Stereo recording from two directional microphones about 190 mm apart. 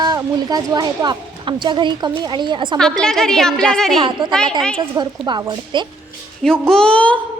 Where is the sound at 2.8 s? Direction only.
5° left (ahead or behind).